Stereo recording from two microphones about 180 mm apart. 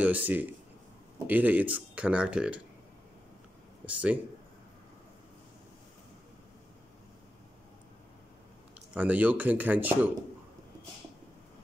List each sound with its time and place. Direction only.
0.0 s speech: 10° right (ahead or behind)
3.8 s speech: 5° right (ahead or behind)
8.9 s speech: 10° right (ahead or behind)